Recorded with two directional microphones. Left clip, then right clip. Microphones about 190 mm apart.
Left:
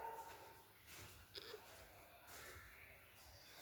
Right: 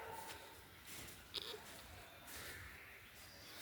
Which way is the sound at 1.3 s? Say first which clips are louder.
Right 8 dB; 15° left (ahead or behind).